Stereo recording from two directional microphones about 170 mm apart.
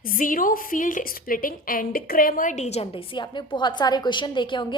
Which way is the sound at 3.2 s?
25° left (ahead or behind).